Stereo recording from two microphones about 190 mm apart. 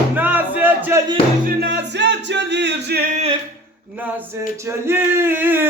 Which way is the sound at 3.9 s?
10° right (ahead or behind).